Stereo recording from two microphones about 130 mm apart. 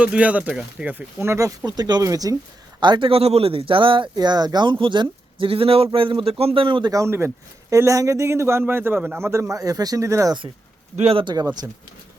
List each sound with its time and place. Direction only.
0.0 s a man's voice: 10° right (ahead or behind); by 6.9 s 40° right (ahead or behind)
6.9 s a man's voice: 20° right (ahead or behind)
10.9 s speech: 45° right (ahead or behind)